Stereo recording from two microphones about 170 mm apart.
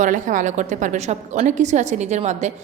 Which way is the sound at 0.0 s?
50° right (ahead or behind).